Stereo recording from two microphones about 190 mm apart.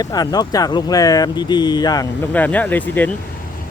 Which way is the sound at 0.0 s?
20° left (ahead or behind).